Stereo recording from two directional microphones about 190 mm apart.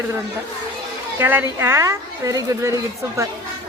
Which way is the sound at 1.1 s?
10° right (ahead or behind).